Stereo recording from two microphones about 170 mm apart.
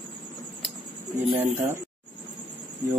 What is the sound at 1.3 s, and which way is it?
Speech, 10° right (ahead or behind).